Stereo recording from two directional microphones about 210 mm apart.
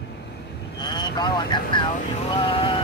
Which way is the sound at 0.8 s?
20° left (ahead or behind).